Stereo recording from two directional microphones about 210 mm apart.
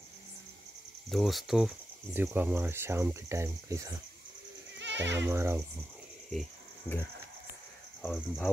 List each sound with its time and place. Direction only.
1.1 s speech: centre (ahead or behind)
4.7 s bleat: 55° right (ahead or behind)
5.1 s speech: 10° right (ahead or behind)
8.0 s speech: 5° left (ahead or behind)